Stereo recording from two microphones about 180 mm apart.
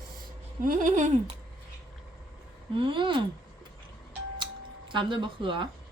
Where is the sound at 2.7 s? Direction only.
25° right (ahead or behind).